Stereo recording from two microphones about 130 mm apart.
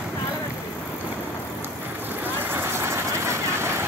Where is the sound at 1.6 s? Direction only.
15° right (ahead or behind).